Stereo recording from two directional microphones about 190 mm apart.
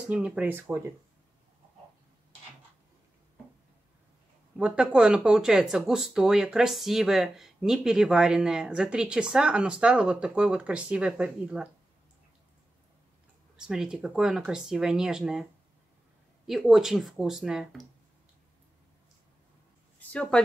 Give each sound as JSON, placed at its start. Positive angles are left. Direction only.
{"t": 0.1, "sound": "speech", "side_deg": -5}
{"t": 4.6, "sound": "speech", "side_deg": -5}
{"t": 13.6, "sound": "speech", "side_deg": -5}
{"t": 16.4, "sound": "speech", "side_deg": 0}
{"t": 20.0, "sound": "a woman's voice", "side_deg": 5}